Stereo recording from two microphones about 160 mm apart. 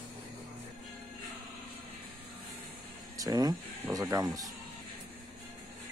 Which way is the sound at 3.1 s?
20° right (ahead or behind).